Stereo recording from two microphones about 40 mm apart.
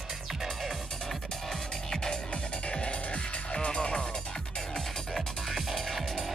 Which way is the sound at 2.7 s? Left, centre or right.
Left.